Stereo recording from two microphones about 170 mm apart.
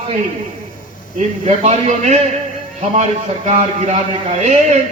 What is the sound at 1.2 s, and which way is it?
Speech, 45° right (ahead or behind).